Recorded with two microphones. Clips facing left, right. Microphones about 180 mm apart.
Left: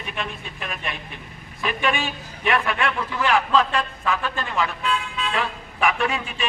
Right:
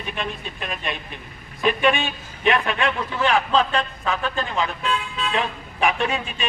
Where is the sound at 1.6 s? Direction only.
25° right (ahead or behind).